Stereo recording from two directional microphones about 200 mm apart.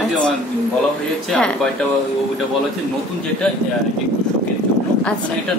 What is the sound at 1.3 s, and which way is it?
Speech, 5° left (ahead or behind).